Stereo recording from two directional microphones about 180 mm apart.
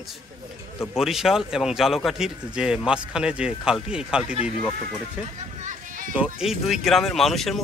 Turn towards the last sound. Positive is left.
turn(degrees=0)  # may be behind; listen again after turning